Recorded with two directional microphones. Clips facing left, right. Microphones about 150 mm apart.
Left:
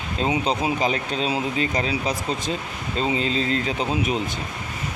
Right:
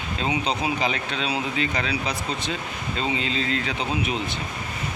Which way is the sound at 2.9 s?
40° left (ahead or behind).